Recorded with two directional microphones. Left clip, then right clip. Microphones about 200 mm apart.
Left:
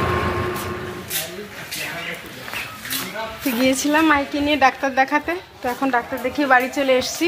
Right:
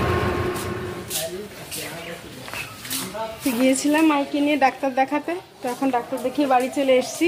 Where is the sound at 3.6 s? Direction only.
Centre (ahead or behind).